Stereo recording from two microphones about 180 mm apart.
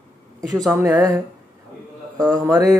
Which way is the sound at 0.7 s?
15° right (ahead or behind).